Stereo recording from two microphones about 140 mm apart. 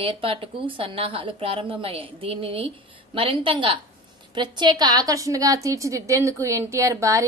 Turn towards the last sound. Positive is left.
turn(degrees=-20)  # may be behind; listen again after turning